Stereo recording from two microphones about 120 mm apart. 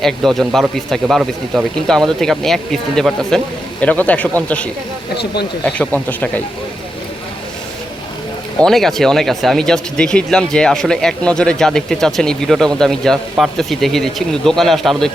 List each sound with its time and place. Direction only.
0.0 s speech: centre (ahead or behind)
8.5 s speech: 5° left (ahead or behind)